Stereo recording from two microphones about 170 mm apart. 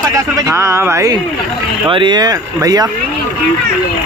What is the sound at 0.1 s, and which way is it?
A man's voice, 20° right (ahead or behind).